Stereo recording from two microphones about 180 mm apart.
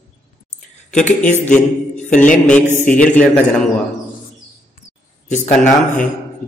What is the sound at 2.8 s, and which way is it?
Speech, 5° left (ahead or behind).